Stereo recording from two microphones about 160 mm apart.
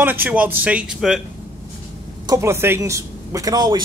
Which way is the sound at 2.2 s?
20° right (ahead or behind).